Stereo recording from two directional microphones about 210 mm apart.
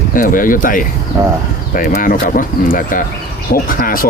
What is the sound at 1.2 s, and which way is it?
Speech, 15° right (ahead or behind).